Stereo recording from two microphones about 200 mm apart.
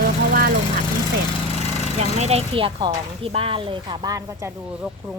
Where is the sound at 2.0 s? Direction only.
35° right (ahead or behind).